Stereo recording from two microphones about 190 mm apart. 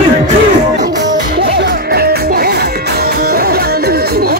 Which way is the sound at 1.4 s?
55° right (ahead or behind).